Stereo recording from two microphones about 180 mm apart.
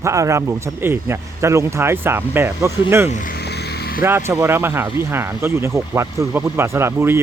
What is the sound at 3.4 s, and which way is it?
Vehicle, 65° left (ahead or behind).